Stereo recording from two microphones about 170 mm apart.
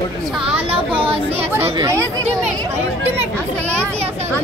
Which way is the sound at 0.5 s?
35° right (ahead or behind).